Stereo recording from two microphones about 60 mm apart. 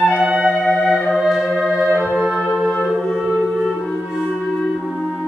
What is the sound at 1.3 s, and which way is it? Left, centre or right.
Music, centre.